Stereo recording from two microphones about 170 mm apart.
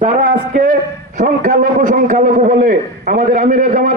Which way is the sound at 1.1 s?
50° right (ahead or behind).